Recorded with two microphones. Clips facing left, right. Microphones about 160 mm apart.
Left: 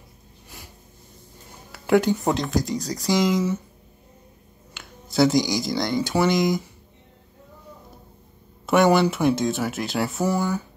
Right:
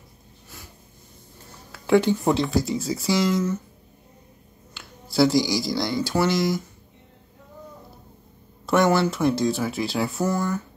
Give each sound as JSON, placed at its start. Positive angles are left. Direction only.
{"t": 1.7, "sound": "speech", "side_deg": 5}
{"t": 3.1, "sound": "speech", "side_deg": 15}
{"t": 5.1, "sound": "speech", "side_deg": 0}
{"t": 5.9, "sound": "speech", "side_deg": 20}
{"t": 8.6, "sound": "speech", "side_deg": 5}